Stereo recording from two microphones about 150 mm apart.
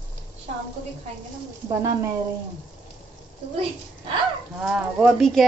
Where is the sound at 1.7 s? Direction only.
20° right (ahead or behind).